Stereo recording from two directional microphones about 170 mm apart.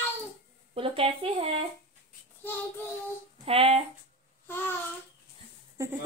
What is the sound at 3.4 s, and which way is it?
Speech, 35° right (ahead or behind).